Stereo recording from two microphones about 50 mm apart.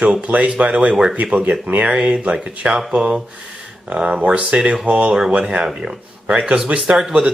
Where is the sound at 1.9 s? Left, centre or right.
Right.